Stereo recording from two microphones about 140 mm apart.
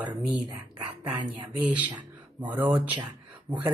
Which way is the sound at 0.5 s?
30° right (ahead or behind).